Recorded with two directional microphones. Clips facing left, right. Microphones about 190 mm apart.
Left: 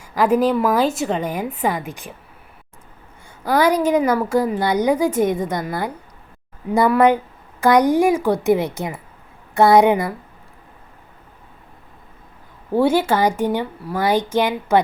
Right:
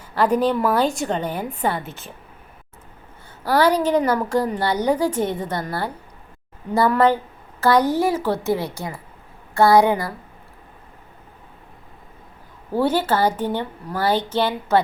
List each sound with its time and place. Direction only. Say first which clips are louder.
0.0 s a woman's voice: left 2 dB; 10° left (ahead or behind)
3.4 s a woman's voice: left 1 dB; 10° left (ahead or behind)
12.7 s a woman's voice: left 3 dB; 10° left (ahead or behind)